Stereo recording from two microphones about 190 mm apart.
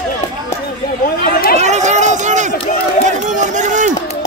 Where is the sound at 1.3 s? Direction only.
50° left (ahead or behind).